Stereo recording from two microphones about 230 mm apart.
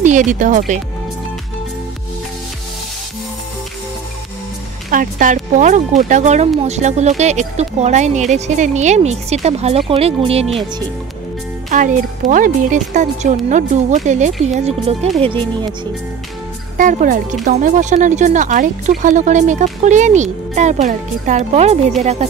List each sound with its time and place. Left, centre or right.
0.0 s speech: right
4.9 s speech: right
11.7 s speech: right
16.7 s speech: right